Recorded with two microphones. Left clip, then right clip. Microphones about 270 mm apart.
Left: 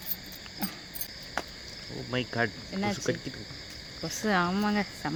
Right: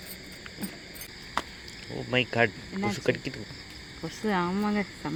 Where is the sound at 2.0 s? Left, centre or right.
Centre.